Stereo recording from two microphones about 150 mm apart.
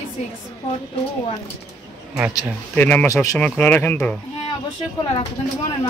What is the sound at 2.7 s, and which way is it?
Speech, 10° left (ahead or behind).